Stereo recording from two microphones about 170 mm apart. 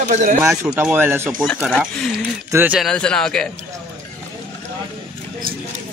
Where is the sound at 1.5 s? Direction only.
Centre (ahead or behind).